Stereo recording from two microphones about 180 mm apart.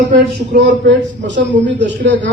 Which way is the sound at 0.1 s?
60° right (ahead or behind).